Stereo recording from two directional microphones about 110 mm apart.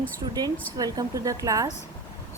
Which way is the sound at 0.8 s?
35° right (ahead or behind).